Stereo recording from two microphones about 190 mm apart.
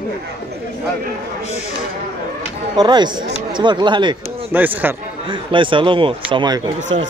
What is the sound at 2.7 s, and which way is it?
Speech, 20° right (ahead or behind).